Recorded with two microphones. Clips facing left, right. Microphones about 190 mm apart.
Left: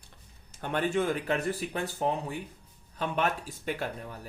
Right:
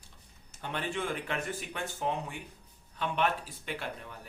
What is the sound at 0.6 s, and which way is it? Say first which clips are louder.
Speech: left 7 dB; 50° left (ahead or behind).